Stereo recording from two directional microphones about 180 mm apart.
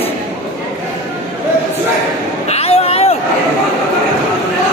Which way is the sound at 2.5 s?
35° left (ahead or behind).